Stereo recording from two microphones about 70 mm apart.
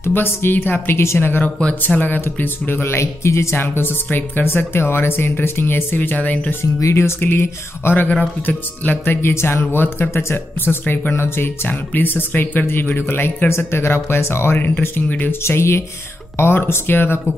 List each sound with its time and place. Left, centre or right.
0.0 s speech: left
6.6 s speech: left
14.6 s speech: left
15.4 s speech: left